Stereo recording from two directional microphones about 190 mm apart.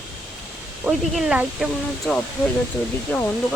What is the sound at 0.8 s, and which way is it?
Speech, 5° right (ahead or behind).